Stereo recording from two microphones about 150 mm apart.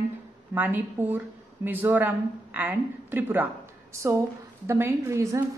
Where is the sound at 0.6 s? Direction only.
15° right (ahead or behind).